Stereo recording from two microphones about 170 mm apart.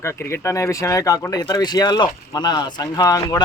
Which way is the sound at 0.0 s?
15° left (ahead or behind).